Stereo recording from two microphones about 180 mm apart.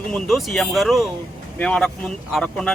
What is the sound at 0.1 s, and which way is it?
Speech, centre (ahead or behind).